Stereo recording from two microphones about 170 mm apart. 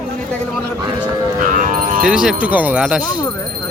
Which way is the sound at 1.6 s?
50° right (ahead or behind).